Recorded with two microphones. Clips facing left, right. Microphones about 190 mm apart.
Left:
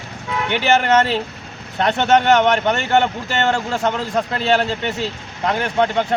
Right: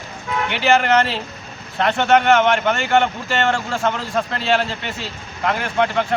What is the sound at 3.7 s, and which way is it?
Speech, 20° left (ahead or behind).